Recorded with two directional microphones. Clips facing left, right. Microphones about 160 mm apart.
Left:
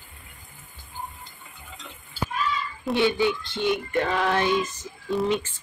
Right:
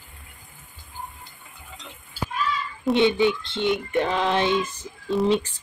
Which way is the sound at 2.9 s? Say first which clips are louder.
Right 3 dB; 20° right (ahead or behind).